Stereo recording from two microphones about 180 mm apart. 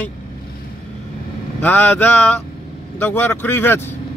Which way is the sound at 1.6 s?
10° left (ahead or behind).